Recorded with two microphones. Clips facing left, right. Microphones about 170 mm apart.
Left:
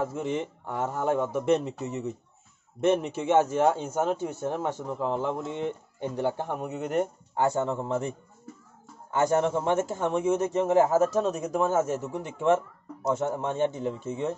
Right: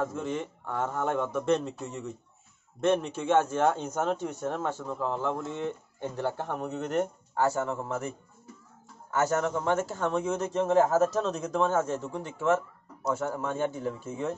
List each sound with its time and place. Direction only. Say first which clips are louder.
0.0 s speech: left 2 dB; 10° left (ahead or behind)
9.1 s a man's voice: left 3 dB; 15° left (ahead or behind)